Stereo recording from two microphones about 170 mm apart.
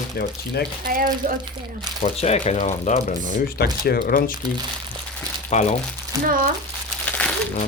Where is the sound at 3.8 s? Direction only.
60° left (ahead or behind).